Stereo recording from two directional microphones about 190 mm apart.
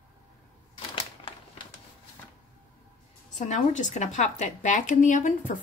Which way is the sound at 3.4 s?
40° left (ahead or behind).